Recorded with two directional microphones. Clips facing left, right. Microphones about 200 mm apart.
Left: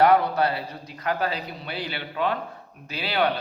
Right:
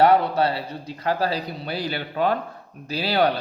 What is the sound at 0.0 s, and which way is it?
Speech, 30° right (ahead or behind).